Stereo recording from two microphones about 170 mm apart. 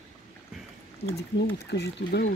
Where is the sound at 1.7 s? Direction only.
80° left.